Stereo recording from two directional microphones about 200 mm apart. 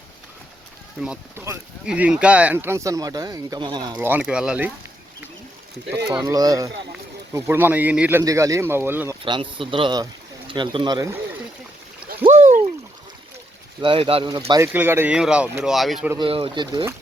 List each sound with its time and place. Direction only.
1.0 s speech: 5° right (ahead or behind); by 3.8 s 20° right (ahead or behind)
3.9 s speech: 10° right (ahead or behind)
6.2 s speech: 20° right (ahead or behind)
9.2 s a man's voice: 25° right (ahead or behind)
12.2 s a sound: 35° right (ahead or behind)
13.8 s a man's voice: 25° right (ahead or behind); by 16.1 s centre (ahead or behind)
16.1 s a man's voice: 25° right (ahead or behind)